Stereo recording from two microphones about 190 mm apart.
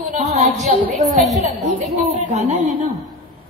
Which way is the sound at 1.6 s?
40° right (ahead or behind).